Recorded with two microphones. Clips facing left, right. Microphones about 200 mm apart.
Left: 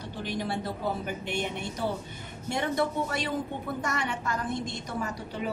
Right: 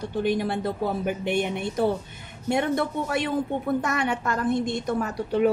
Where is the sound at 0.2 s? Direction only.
55° right (ahead or behind).